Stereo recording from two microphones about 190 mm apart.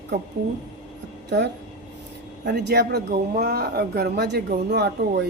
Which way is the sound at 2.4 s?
60° right (ahead or behind).